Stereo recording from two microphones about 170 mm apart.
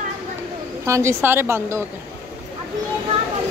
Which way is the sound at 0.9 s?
15° right (ahead or behind).